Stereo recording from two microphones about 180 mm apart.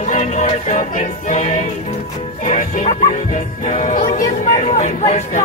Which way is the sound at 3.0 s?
40° left (ahead or behind).